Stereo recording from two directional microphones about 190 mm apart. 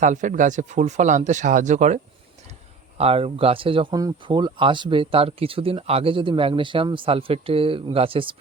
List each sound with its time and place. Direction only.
0.0 s speech: 40° right (ahead or behind)
3.0 s speech: 30° right (ahead or behind)